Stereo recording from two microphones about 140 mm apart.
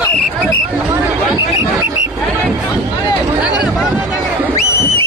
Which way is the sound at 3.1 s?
25° left (ahead or behind).